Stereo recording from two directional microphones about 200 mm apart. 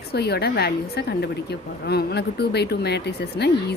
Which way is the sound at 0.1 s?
55° left (ahead or behind).